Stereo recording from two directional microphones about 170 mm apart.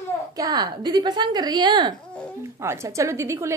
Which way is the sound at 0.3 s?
20° right (ahead or behind).